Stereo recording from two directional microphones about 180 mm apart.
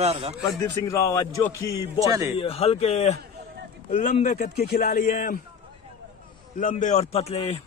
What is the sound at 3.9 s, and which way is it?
Speech, 50° left (ahead or behind).